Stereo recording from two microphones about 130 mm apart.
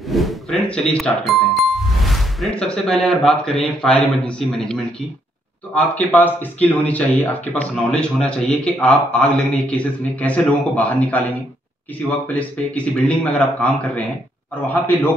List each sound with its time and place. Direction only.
0.1 s music: centre (ahead or behind)
3.8 s a man's voice: 5° left (ahead or behind)
12.3 s speech: 10° left (ahead or behind)